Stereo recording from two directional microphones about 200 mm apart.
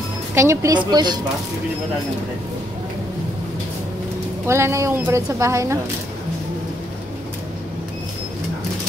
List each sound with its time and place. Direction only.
0.3 s speech: 15° right (ahead or behind)
4.5 s speech: 15° right (ahead or behind)